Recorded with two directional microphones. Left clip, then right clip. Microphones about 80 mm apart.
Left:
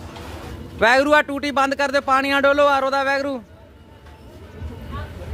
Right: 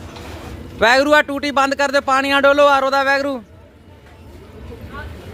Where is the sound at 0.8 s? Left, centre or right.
Centre; by 3.4 s right.